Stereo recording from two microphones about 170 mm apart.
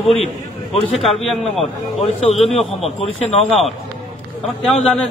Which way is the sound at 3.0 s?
40° left (ahead or behind).